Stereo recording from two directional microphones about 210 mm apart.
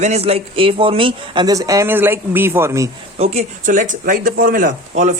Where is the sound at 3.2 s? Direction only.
30° right (ahead or behind).